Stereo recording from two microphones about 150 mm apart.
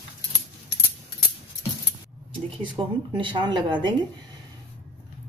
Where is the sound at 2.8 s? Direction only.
30° right (ahead or behind).